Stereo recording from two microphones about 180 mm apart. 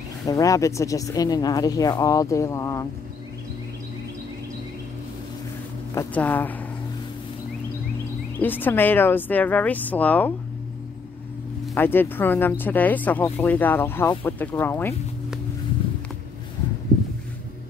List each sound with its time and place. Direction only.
0.2 s speech: 20° left (ahead or behind)
5.9 s speech: 10° left (ahead or behind)
8.4 s speech: 10° left (ahead or behind)
11.7 s speech: 10° left (ahead or behind)